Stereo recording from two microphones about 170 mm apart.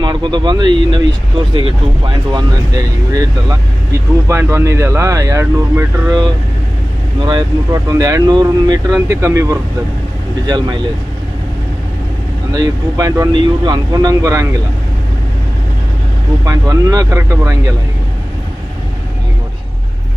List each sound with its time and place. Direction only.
0.0 s speech: 25° right (ahead or behind)
2.0 s speech: 25° right (ahead or behind)
12.5 s speech: 20° right (ahead or behind)
16.5 s speech: 20° right (ahead or behind)